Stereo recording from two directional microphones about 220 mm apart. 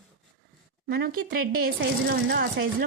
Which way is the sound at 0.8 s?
45° right (ahead or behind).